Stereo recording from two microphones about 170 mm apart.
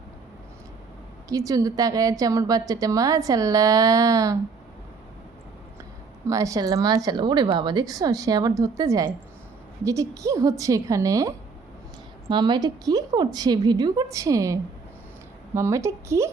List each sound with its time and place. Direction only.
1.3 s a woman's voice: 20° right (ahead or behind)
6.2 s a woman's voice: 20° right (ahead or behind)